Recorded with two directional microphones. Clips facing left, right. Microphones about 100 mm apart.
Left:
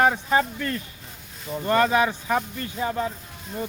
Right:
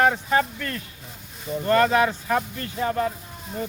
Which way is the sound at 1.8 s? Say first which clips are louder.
Right 1 dB; 10° left (ahead or behind).